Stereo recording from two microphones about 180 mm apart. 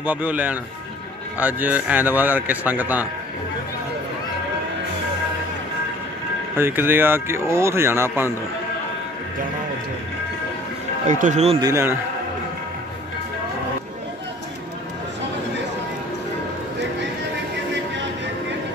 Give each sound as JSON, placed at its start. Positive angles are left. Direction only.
{"t": 0.0, "sound": "speech", "side_deg": -10}
{"t": 6.5, "sound": "speech", "side_deg": -10}
{"t": 11.1, "sound": "speech", "side_deg": -45}
{"t": 11.6, "sound": "speech", "side_deg": -15}